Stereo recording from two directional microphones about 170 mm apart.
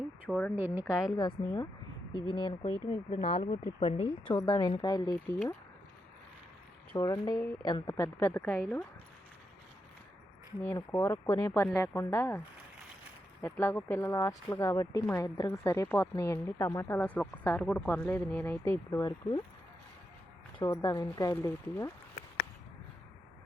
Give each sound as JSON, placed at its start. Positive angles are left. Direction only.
{"t": 0.3, "sound": "speech", "side_deg": 10}
{"t": 0.5, "sound": "a woman's voice", "side_deg": -15}
{"t": 1.1, "sound": "a woman's voice", "side_deg": 25}
{"t": 4.4, "sound": "speech", "side_deg": 25}
{"t": 6.9, "sound": "speech", "side_deg": 25}
{"t": 11.0, "sound": "speech", "side_deg": 15}
{"t": 13.4, "sound": "speech", "side_deg": 15}
{"t": 20.7, "sound": "speech", "side_deg": 25}